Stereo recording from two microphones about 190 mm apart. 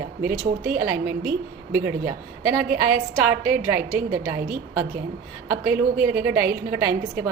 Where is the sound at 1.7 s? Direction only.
10° right (ahead or behind).